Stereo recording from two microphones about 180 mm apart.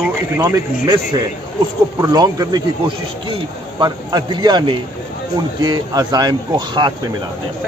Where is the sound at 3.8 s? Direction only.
25° right (ahead or behind).